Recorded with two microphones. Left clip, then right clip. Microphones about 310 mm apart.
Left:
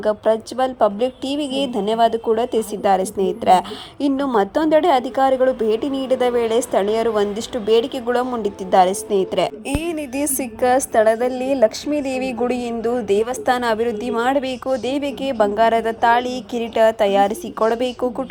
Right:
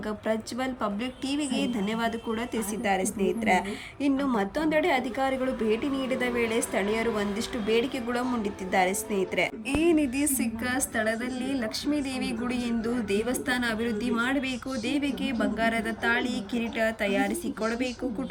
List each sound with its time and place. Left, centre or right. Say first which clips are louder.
0.0 s a woman's voice: left 13 dB; centre
3.2 s a woman's voice: left 8 dB; left
4.4 s a woman's voice: left 10 dB; centre